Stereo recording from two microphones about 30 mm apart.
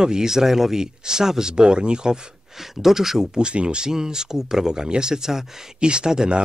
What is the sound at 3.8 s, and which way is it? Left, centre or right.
Speech, right.